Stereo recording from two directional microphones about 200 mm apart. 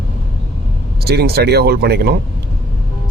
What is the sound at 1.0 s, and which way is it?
Speech, 55° right (ahead or behind).